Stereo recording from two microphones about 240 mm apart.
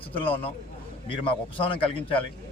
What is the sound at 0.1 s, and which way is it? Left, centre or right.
Speech, left.